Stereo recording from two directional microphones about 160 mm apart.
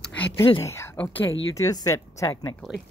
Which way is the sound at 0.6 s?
15° left (ahead or behind).